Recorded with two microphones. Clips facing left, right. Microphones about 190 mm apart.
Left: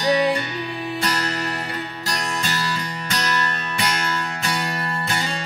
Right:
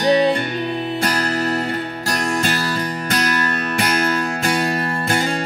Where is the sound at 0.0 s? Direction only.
25° right (ahead or behind).